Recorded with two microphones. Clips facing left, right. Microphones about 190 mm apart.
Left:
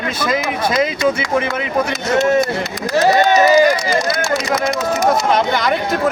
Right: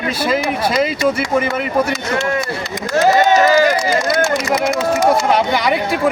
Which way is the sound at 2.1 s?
40° left (ahead or behind).